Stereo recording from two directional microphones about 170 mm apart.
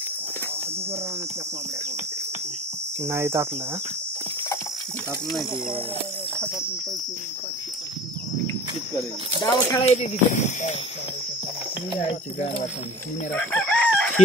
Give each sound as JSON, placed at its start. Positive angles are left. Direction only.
{"t": 3.1, "sound": "hum", "side_deg": -15}
{"t": 9.4, "sound": "speech", "side_deg": 20}
{"t": 9.8, "sound": "speech", "side_deg": 45}
{"t": 13.3, "sound": "chicken", "side_deg": 10}